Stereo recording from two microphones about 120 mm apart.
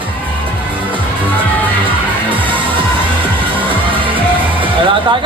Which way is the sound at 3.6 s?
45° right (ahead or behind).